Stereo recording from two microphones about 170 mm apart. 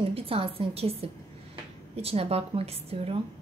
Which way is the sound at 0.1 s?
35° right (ahead or behind).